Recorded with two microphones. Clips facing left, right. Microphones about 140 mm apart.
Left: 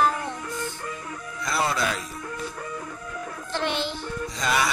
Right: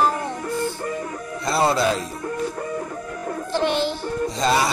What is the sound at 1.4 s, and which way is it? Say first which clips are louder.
Speech: right 6 dB; 30° right (ahead or behind).